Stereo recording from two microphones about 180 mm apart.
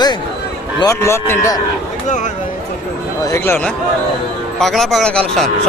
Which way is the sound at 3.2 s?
15° left (ahead or behind).